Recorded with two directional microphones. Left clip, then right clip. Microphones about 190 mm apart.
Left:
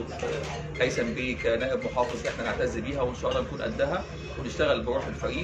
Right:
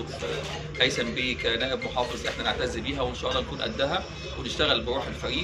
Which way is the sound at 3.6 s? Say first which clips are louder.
Right 1 dB; 15° left (ahead or behind).